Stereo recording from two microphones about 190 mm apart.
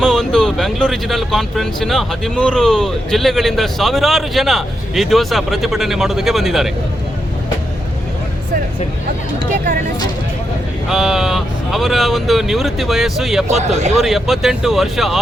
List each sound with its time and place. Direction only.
0.0 s speech: centre (ahead or behind)
10.8 s speech: centre (ahead or behind)
13.5 s speech: 35° right (ahead or behind)
13.9 s speech: centre (ahead or behind)